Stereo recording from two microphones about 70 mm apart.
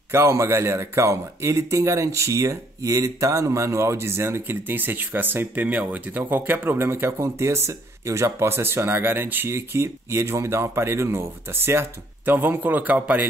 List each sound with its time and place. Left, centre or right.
0.1 s a man's voice: right